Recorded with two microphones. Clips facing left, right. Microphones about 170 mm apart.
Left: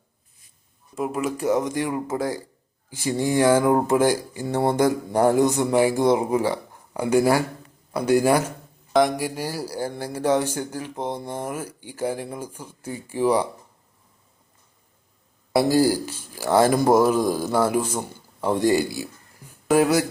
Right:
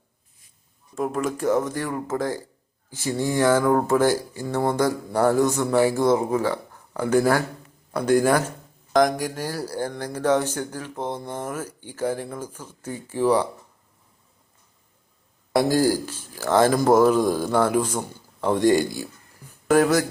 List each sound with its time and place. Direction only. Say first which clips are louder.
0.9 s speech: even; 5° left (ahead or behind)
15.5 s a man's voice: left 1 dB; 10° left (ahead or behind)